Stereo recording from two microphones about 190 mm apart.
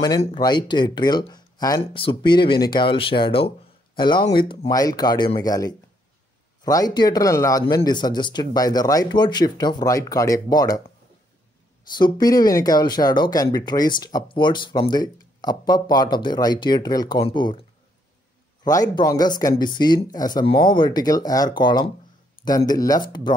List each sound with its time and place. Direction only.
0.2 s speech: 25° left (ahead or behind)
12.0 s speech: 20° left (ahead or behind)
18.6 s speech: 20° left (ahead or behind)